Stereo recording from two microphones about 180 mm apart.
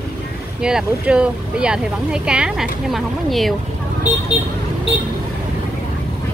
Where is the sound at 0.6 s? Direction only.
5° right (ahead or behind).